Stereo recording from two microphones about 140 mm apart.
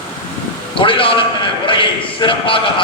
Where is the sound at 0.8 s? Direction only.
40° left (ahead or behind).